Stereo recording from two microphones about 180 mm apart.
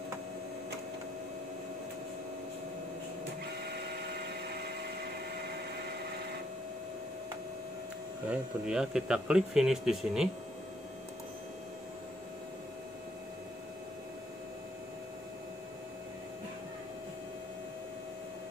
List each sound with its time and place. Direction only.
8.3 s speech: 5° right (ahead or behind)